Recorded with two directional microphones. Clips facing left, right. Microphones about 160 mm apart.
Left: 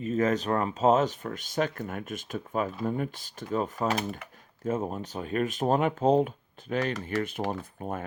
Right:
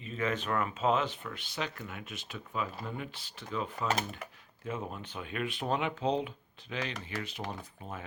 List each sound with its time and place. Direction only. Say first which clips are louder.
0.0 s speech: left 8 dB; 45° left (ahead or behind)